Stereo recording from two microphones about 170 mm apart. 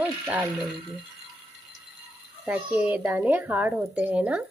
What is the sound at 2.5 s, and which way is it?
Speech, 10° right (ahead or behind).